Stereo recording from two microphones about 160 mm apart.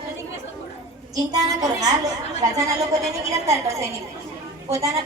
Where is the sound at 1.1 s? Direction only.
25° right (ahead or behind).